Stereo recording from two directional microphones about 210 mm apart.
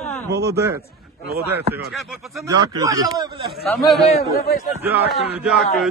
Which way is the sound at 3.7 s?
Centre (ahead or behind).